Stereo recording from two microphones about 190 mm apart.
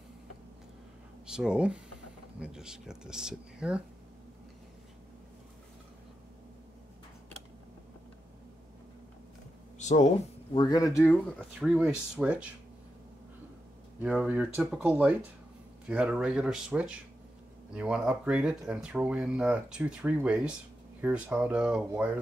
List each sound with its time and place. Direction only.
1.2 s speech: 5° right (ahead or behind)
9.8 s a sound: 40° left (ahead or behind)
10.5 s speech: 20° left (ahead or behind)
11.3 s speech: 5° right (ahead or behind)
14.2 s speech: 10° right (ahead or behind)